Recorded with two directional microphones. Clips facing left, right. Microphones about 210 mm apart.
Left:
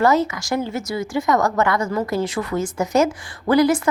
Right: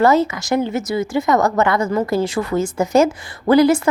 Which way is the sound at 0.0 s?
25° right (ahead or behind).